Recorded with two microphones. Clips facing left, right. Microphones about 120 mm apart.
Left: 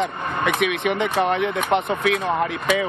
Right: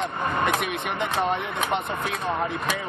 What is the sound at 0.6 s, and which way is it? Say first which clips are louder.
Speech: left 6 dB; 80° left.